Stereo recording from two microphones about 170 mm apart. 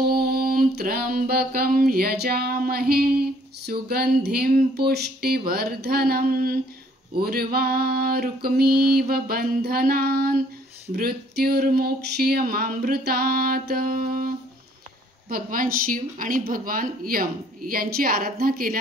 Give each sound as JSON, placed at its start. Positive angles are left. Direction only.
{"t": 0.0, "sound": "mantra", "side_deg": -65}